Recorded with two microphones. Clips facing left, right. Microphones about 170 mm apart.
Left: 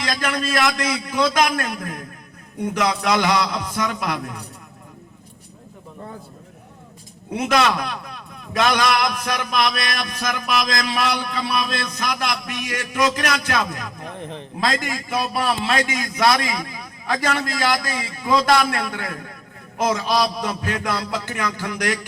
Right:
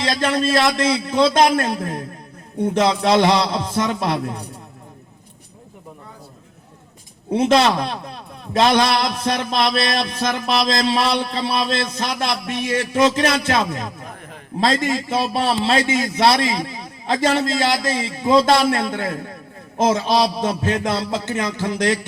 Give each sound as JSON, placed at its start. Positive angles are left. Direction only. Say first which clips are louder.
{"t": 0.0, "sound": "a man's voice", "louder": "right 5 dB", "side_deg": -25}
{"t": 7.3, "sound": "a man's voice", "louder": "right 4 dB", "side_deg": -30}
{"t": 14.2, "sound": "a man's voice", "louder": "left 7 dB", "side_deg": 25}
{"t": 14.6, "sound": "a man's voice", "louder": "right 5 dB", "side_deg": -30}